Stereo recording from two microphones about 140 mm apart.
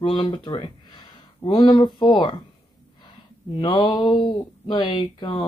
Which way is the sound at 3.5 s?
35° left (ahead or behind).